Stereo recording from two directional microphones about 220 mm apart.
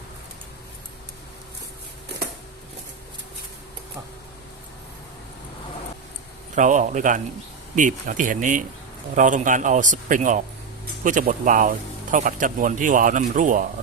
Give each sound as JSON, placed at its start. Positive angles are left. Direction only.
{"t": 6.6, "sound": "speech", "side_deg": -35}